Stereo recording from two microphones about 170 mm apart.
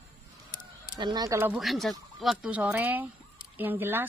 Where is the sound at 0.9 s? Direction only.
25° right (ahead or behind).